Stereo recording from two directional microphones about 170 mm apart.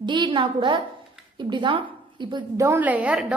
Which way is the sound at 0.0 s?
25° right (ahead or behind).